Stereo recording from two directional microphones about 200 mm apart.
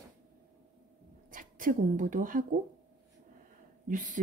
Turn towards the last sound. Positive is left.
turn(degrees=-40)  # may be behind; listen again after turning